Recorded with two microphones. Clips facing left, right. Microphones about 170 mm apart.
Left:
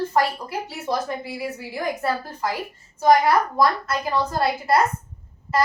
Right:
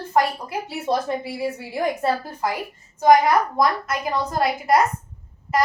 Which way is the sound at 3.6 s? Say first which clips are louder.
Even; 20° right (ahead or behind).